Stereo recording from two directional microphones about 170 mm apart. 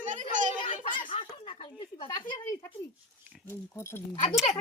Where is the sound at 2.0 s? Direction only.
25° left (ahead or behind).